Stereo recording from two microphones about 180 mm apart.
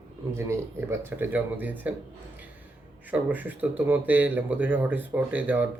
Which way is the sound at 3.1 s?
10° right (ahead or behind).